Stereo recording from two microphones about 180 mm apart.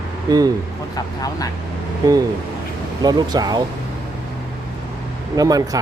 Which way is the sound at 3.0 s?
20° right (ahead or behind).